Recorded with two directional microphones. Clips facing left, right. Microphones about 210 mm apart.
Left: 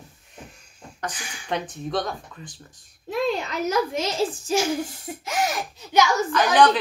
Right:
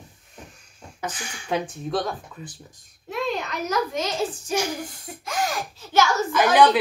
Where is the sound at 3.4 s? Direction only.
25° left (ahead or behind).